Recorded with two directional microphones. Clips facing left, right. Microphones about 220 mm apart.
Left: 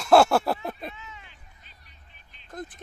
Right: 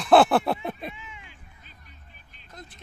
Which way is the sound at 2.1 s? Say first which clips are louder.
Right 3 dB; 45° right (ahead or behind).